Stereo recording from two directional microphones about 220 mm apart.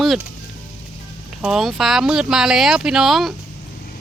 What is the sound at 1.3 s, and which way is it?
Speech, centre (ahead or behind).